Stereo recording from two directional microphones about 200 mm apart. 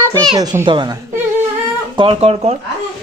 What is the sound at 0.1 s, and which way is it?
Speech, 20° right (ahead or behind).